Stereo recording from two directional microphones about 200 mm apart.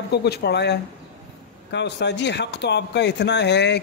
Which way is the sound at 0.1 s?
55° left (ahead or behind).